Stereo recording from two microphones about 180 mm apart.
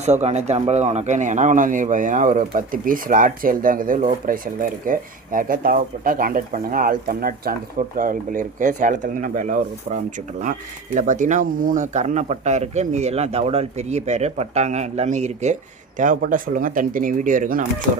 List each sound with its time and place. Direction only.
0.0 s speech: 40° right (ahead or behind)